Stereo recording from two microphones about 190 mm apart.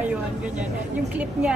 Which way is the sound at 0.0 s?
5° right (ahead or behind).